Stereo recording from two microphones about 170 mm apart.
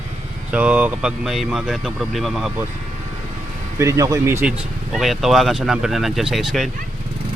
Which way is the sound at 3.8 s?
15° right (ahead or behind).